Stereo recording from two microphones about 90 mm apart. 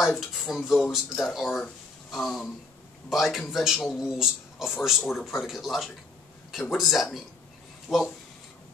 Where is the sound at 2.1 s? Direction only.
Centre (ahead or behind).